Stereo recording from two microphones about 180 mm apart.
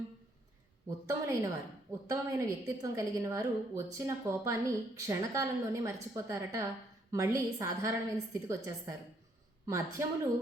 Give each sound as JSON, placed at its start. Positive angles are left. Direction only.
{"t": 0.9, "sound": "a woman's voice", "side_deg": -15}